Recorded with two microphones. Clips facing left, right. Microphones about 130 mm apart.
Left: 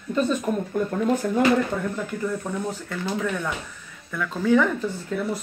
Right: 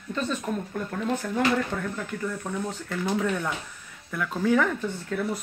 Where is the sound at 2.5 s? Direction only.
5° left (ahead or behind).